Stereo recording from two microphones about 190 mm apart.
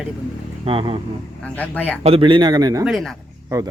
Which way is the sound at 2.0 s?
30° right (ahead or behind).